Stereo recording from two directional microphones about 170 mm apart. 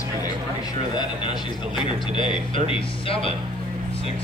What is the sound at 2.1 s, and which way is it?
Speech, 30° left (ahead or behind).